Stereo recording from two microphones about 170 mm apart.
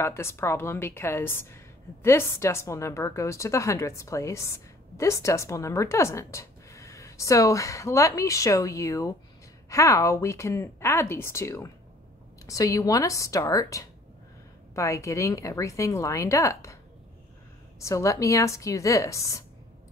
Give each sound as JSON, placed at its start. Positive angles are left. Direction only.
{"t": 0.0, "sound": "a woman's voice", "side_deg": 15}
{"t": 17.7, "sound": "a woman's voice", "side_deg": 15}